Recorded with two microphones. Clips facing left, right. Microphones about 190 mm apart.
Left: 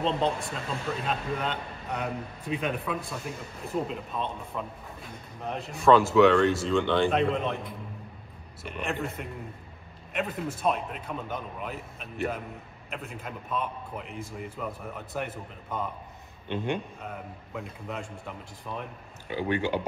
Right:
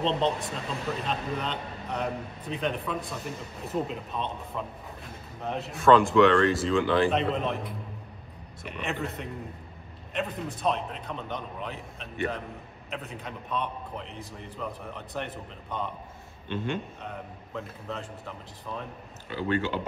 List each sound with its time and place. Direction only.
0.0 s a man's voice: centre (ahead or behind)
8.6 s a man's voice: centre (ahead or behind)
16.4 s a man's voice: 15° left (ahead or behind)
17.0 s a man's voice: 5° left (ahead or behind)
19.2 s a man's voice: 15° left (ahead or behind)